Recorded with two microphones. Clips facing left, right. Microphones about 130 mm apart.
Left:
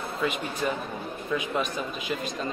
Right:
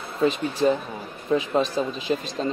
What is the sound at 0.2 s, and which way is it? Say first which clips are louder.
Speech: right 8 dB; 30° right (ahead or behind).